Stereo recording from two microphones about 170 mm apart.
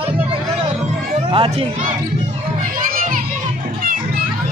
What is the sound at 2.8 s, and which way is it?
Children playing, 55° right (ahead or behind).